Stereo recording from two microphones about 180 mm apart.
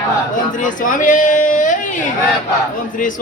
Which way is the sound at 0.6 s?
50° left (ahead or behind).